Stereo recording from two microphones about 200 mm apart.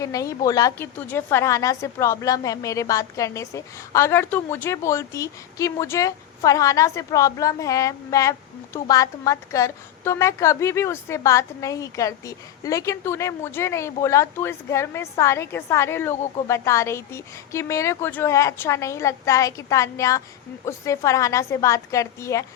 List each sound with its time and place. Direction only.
0.0 s a woman's voice: 15° left (ahead or behind)